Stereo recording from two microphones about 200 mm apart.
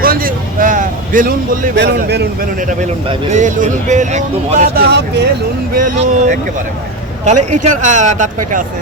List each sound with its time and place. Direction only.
0.0 s a sound: 45° right (ahead or behind)
1.7 s a man's voice: 60° right (ahead or behind)
3.1 s speech: 35° right (ahead or behind); by 5.3 s 55° right (ahead or behind)
5.7 s speech: 45° right (ahead or behind)